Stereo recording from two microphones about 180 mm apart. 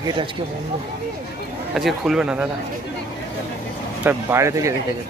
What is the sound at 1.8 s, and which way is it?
Speech, centre (ahead or behind).